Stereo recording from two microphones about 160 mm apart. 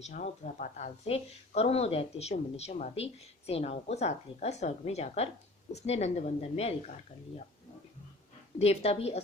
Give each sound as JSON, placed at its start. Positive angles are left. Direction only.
{"t": 0.0, "sound": "speech", "side_deg": 50}
{"t": 8.5, "sound": "speech", "side_deg": 40}